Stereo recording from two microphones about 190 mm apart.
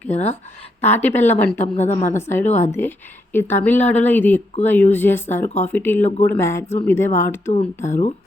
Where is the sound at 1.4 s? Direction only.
10° left (ahead or behind).